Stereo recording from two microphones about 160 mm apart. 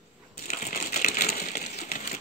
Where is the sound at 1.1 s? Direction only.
65° left (ahead or behind).